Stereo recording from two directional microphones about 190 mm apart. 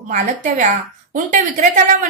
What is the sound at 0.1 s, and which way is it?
A woman's voice, 40° right (ahead or behind).